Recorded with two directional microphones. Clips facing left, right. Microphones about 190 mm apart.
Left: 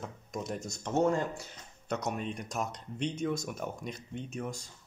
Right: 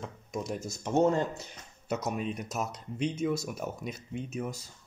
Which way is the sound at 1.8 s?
5° right (ahead or behind).